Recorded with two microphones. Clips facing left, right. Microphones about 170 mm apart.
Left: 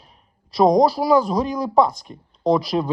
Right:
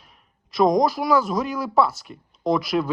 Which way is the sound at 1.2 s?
40° left (ahead or behind).